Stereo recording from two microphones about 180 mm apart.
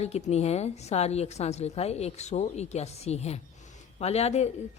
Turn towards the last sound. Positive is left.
turn(degrees=35)  # may be behind; listen again after turning